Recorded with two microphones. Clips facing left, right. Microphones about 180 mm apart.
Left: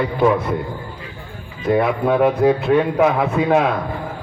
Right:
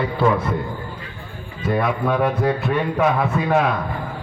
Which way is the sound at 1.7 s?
20° left (ahead or behind).